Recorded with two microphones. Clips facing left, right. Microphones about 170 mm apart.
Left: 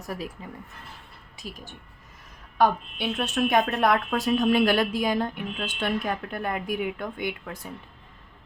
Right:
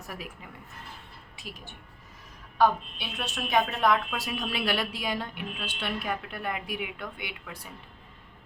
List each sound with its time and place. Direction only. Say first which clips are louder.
0.4 s speech: left 7 dB; 35° left (ahead or behind)
3.0 s a woman's voice: left 10 dB; 55° left (ahead or behind)